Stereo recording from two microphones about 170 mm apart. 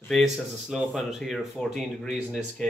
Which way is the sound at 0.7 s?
Centre (ahead or behind).